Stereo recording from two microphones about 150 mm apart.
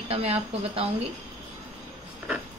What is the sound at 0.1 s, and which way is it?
Speech, 45° right (ahead or behind).